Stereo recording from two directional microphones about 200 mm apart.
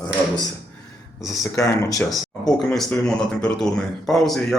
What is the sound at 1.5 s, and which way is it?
Speech, 15° left (ahead or behind).